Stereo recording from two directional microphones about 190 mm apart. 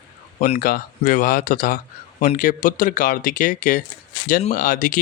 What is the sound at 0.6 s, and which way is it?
A man's voice, 50° left (ahead or behind).